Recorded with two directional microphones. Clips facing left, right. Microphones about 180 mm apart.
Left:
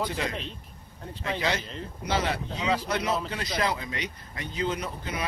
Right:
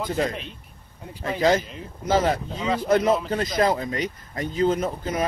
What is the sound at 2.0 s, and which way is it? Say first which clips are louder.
Speech: right 7 dB; 45° right (ahead or behind).